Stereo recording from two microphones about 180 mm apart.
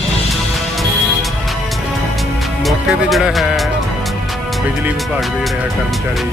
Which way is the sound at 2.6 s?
Centre (ahead or behind).